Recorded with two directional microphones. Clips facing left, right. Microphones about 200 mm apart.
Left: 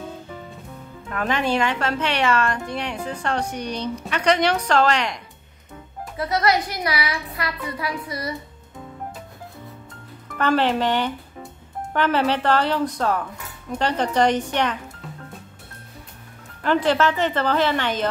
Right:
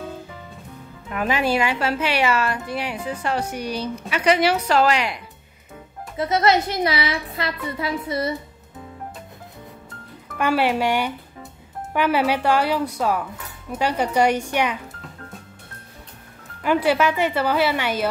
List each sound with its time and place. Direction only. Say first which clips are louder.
1.1 s a woman's voice: right 1 dB; 10° right (ahead or behind)
6.1 s a woman's voice: right 2 dB; 25° right (ahead or behind)
10.3 s a woman's voice: even; 10° right (ahead or behind)
16.6 s a woman's voice: even; 10° right (ahead or behind)